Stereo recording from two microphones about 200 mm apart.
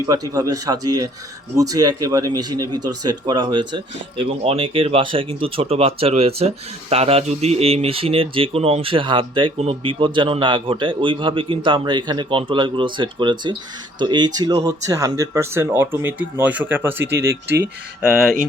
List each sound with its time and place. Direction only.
0.0 s speech: 20° right (ahead or behind)